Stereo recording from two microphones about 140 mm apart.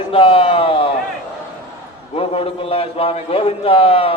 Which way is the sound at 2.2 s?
45° left (ahead or behind).